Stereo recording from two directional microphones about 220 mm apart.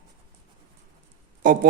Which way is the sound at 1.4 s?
40° right (ahead or behind).